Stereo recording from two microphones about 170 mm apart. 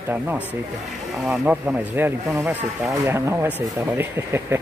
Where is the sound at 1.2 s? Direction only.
5° right (ahead or behind).